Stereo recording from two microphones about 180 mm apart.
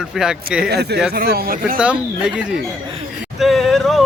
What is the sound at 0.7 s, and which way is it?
Speech, 65° right (ahead or behind).